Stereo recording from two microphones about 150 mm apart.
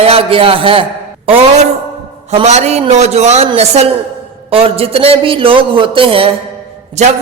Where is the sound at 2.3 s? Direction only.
50° right (ahead or behind).